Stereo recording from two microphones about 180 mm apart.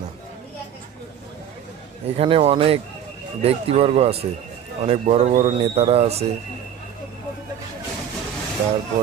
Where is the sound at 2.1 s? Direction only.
35° right (ahead or behind).